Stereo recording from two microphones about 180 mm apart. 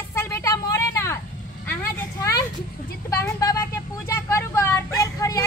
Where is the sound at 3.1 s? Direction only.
15° left (ahead or behind).